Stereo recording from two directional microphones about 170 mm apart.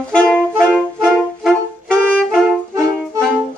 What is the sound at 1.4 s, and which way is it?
Music, centre (ahead or behind).